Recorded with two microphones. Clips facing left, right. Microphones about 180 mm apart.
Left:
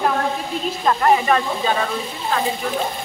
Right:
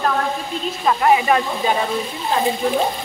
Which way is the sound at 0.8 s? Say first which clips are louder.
Right 1 dB; 10° right (ahead or behind).